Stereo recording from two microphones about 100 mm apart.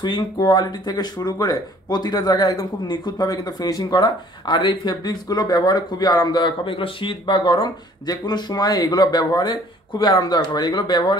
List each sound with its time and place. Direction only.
0.0 s speech: 45° left (ahead or behind)